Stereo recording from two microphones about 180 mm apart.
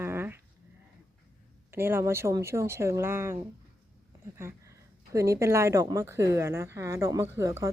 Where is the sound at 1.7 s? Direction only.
15° right (ahead or behind).